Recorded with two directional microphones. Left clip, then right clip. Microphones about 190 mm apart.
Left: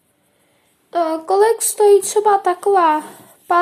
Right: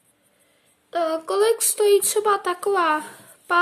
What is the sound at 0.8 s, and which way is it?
Child singing, 25° right (ahead or behind).